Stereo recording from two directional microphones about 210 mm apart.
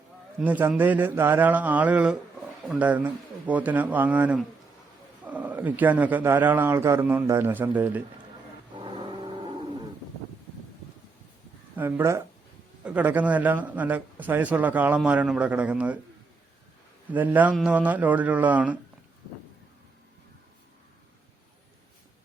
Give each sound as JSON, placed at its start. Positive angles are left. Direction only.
{"t": 0.3, "sound": "a man's voice", "side_deg": -10}
{"t": 8.7, "sound": "vehicle", "side_deg": -25}
{"t": 11.8, "sound": "a man's voice", "side_deg": -10}
{"t": 17.1, "sound": "a man's voice", "side_deg": -10}